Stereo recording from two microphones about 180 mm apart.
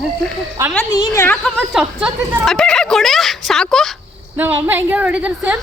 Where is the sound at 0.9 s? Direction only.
15° left (ahead or behind).